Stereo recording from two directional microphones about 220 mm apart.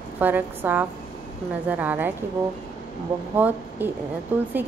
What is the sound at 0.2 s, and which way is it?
Speech, 10° right (ahead or behind).